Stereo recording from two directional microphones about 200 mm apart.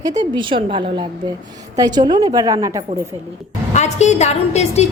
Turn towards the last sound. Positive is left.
turn(degrees=35)  # may be behind; listen again after turning